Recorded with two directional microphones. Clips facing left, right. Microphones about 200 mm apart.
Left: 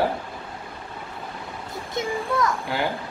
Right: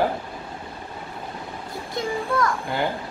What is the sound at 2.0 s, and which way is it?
Speech, 20° left (ahead or behind).